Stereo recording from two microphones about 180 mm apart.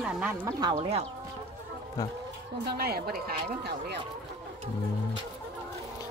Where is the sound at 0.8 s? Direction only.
35° right (ahead or behind).